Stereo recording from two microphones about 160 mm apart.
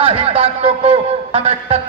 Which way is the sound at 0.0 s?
35° right (ahead or behind).